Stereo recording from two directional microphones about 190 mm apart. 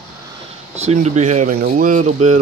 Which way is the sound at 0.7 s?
35° right (ahead or behind).